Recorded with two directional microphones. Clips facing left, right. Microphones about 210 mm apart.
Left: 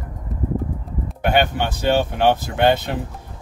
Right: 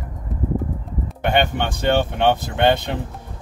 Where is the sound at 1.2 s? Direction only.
5° left (ahead or behind).